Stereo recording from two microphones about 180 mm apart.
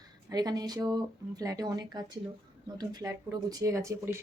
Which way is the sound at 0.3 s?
20° right (ahead or behind).